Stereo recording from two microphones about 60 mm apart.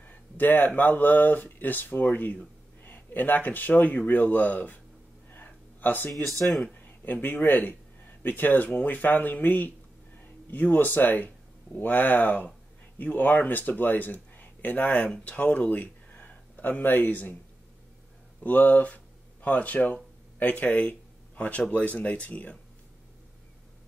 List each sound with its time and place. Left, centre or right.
0.0 s speech: left
5.3 s a sound: left
6.6 s speech: left
18.4 s speech: left